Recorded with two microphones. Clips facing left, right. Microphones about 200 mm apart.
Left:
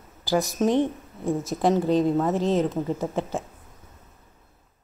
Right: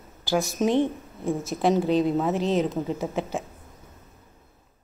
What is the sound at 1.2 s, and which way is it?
Speech, 15° left (ahead or behind).